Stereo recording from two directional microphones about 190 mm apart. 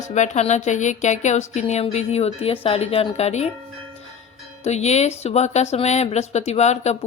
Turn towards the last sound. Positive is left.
turn(degrees=35)  # may be behind; listen again after turning